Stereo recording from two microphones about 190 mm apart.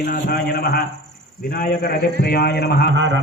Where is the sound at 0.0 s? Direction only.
50° left (ahead or behind).